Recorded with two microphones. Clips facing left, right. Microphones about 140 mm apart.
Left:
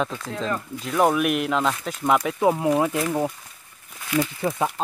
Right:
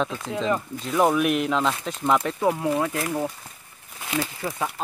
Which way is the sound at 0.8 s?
Centre (ahead or behind).